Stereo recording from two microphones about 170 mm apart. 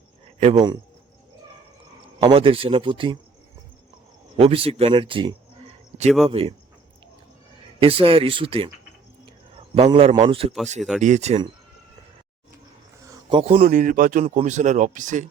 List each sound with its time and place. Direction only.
0.3 s speech: 40° right (ahead or behind)
2.1 s a man's voice: 30° right (ahead or behind)
4.4 s a man's voice: 35° right (ahead or behind)
7.8 s a man's voice: 35° right (ahead or behind)
9.7 s a man's voice: 35° right (ahead or behind)
10.8 s speech: centre (ahead or behind)
11.0 s a man's voice: 40° right (ahead or behind)
13.4 s a man's voice: 40° right (ahead or behind)
13.7 s speech: 55° right (ahead or behind)